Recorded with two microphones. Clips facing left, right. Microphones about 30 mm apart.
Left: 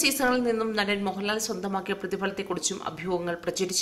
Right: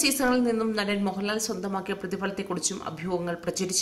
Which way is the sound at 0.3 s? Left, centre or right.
Centre.